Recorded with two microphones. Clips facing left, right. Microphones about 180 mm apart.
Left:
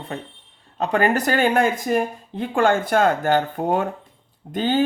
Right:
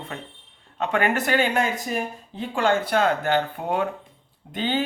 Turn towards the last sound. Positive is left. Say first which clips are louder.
# left 5 dB
turn(degrees=40)  # may be behind; listen again after turning